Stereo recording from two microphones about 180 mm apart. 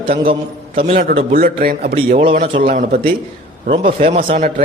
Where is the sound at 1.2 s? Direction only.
55° right (ahead or behind).